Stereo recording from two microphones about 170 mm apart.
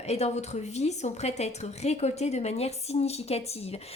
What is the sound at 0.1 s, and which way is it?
A woman's voice, 40° left (ahead or behind).